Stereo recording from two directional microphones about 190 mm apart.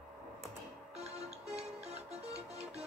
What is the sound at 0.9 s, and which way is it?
Music, 35° right (ahead or behind).